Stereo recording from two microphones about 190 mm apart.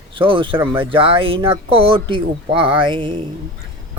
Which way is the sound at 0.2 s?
25° right (ahead or behind).